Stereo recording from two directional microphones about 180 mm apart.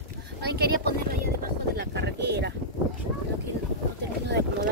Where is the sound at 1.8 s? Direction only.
70° right (ahead or behind).